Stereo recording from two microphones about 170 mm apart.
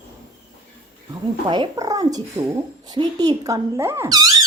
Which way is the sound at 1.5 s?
25° right (ahead or behind).